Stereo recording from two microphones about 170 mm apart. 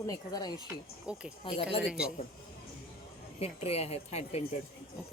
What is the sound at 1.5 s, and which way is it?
Speech, 35° left (ahead or behind).